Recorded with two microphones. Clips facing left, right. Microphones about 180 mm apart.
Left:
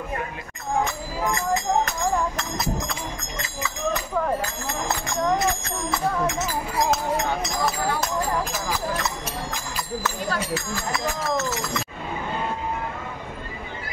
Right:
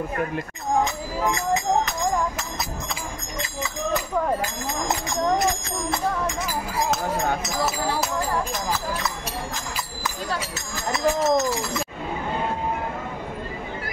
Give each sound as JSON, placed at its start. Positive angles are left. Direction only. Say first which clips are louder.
{"t": 2.3, "sound": "speech", "louder": "left 4 dB", "side_deg": 0}
{"t": 10.3, "sound": "speech", "louder": "left 3 dB", "side_deg": -25}